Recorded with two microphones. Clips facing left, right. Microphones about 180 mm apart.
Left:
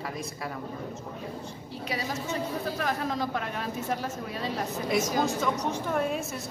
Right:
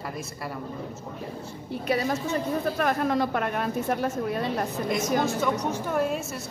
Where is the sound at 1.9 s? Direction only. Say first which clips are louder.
Right 7 dB; 55° right (ahead or behind).